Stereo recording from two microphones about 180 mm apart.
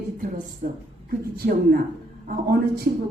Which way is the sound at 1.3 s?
55° right (ahead or behind).